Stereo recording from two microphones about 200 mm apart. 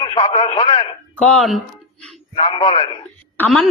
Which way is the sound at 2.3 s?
25° left (ahead or behind).